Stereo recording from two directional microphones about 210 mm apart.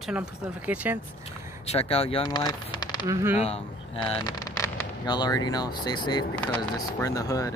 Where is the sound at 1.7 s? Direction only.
30° left (ahead or behind).